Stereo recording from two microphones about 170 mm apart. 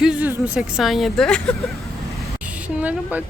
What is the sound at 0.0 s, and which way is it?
A woman's voice, 10° right (ahead or behind).